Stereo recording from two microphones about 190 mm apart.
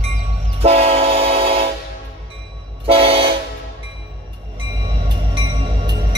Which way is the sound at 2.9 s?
30° right (ahead or behind).